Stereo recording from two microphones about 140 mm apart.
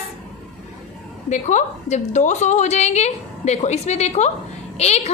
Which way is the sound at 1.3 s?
55° left (ahead or behind).